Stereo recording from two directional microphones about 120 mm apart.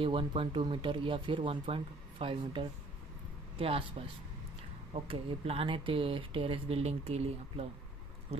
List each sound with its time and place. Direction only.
0.0 s speech: 45° right (ahead or behind)
4.9 s speech: 55° right (ahead or behind)